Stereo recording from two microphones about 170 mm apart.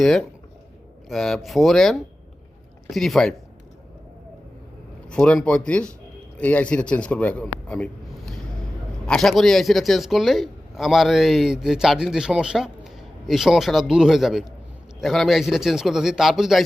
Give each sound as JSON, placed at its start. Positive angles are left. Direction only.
{"t": 0.0, "sound": "a man's voice", "side_deg": 0}
{"t": 5.0, "sound": "a man's voice", "side_deg": 5}